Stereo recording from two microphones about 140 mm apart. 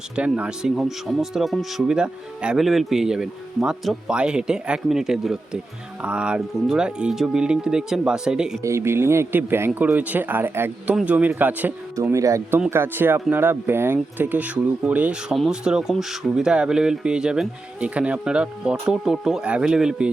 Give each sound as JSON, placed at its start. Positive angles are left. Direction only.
{"t": 0.2, "sound": "speech", "side_deg": -10}
{"t": 8.6, "sound": "speech", "side_deg": -20}
{"t": 12.1, "sound": "speech", "side_deg": -20}